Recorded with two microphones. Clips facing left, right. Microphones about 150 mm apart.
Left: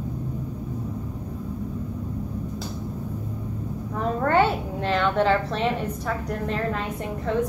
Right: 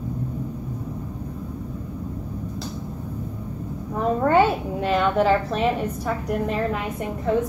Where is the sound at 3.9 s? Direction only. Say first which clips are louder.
Right 3 dB; 10° right (ahead or behind).